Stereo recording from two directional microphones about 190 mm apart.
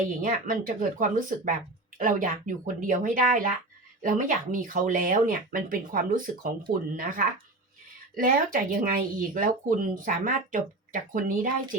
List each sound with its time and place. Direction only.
0.2 s speech: 45° right (ahead or behind)